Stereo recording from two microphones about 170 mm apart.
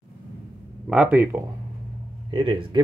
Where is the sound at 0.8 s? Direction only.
10° right (ahead or behind).